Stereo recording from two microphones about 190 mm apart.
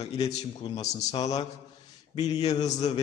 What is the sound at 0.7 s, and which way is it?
Speech, 20° left (ahead or behind).